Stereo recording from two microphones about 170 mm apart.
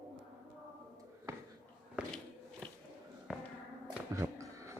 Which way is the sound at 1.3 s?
20° right (ahead or behind).